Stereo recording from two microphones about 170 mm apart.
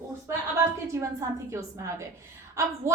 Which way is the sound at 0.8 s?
15° right (ahead or behind).